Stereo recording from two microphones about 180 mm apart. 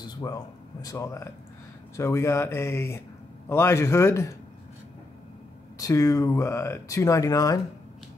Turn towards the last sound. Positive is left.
turn(degrees=20)  # may be behind; listen again after turning